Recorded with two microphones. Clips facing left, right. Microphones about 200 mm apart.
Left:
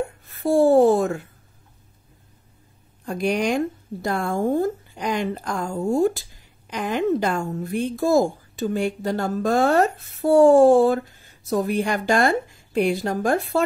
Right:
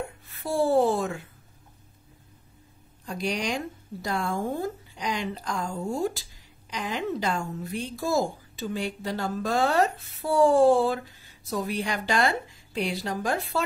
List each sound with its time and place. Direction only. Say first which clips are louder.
0.3 s a woman's voice: left 7 dB; 45° left (ahead or behind)
3.1 s a woman's voice: left 7 dB; 55° left (ahead or behind)